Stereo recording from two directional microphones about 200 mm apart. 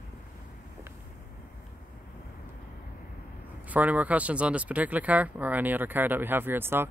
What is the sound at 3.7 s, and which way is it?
Speech, 5° right (ahead or behind).